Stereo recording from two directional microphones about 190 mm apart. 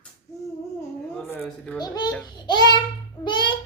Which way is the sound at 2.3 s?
25° left (ahead or behind).